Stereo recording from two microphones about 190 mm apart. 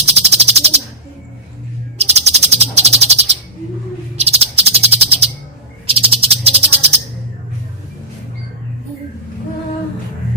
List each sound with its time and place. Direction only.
0.1 s bird: 35° right (ahead or behind)
2.0 s bird: 35° right (ahead or behind)